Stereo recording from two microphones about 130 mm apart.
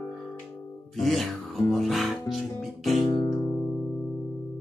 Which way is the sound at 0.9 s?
Centre (ahead or behind).